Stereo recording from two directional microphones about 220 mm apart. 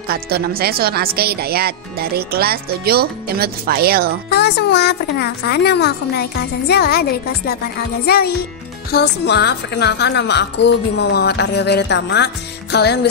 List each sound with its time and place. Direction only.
0.1 s speech: 45° right (ahead or behind)
4.3 s a woman's voice: 50° left (ahead or behind)